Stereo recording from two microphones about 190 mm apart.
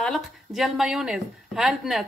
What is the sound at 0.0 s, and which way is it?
A woman's voice, centre (ahead or behind).